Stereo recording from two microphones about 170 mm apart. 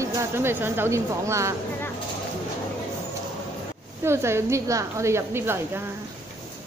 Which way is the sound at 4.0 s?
15° right (ahead or behind).